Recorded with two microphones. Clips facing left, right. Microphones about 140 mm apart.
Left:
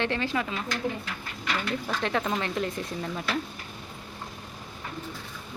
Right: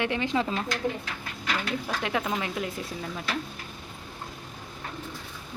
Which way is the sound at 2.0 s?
10° right (ahead or behind).